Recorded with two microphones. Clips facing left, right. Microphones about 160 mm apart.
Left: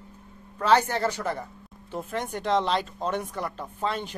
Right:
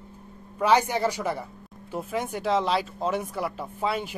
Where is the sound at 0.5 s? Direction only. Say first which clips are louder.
Even; 10° right (ahead or behind).